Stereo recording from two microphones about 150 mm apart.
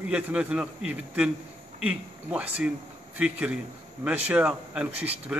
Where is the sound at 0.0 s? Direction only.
5° right (ahead or behind).